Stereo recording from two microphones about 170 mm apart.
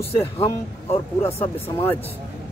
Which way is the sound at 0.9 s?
35° left (ahead or behind).